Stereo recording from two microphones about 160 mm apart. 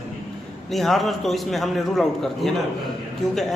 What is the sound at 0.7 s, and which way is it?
A man's voice, centre (ahead or behind).